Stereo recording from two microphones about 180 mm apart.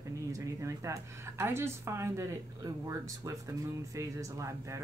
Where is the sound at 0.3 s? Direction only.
15° right (ahead or behind).